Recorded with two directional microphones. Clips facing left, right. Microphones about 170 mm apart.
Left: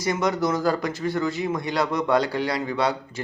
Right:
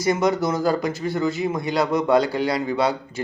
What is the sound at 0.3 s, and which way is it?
Speech, 25° right (ahead or behind).